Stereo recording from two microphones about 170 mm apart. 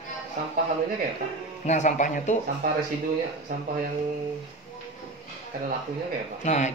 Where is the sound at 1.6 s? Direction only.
45° left (ahead or behind).